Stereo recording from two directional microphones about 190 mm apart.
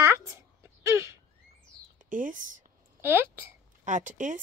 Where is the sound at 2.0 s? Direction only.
45° right (ahead or behind).